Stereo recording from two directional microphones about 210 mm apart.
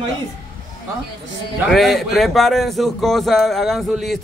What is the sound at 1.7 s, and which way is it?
Speech, centre (ahead or behind).